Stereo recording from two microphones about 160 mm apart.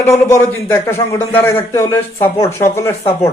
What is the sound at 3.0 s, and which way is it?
Speech, 40° left (ahead or behind).